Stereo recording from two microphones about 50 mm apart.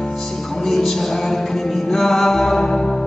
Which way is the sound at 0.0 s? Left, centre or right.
Centre.